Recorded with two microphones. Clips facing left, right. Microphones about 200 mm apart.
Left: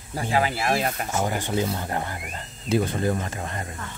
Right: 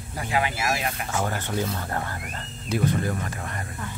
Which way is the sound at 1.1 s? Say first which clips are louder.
Left 2 dB; 15° left (ahead or behind).